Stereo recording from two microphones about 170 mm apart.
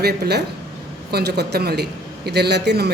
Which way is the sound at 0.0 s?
70° right (ahead or behind).